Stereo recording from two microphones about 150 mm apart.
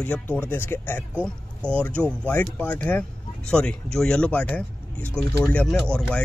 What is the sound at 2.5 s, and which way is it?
Speech, 10° left (ahead or behind).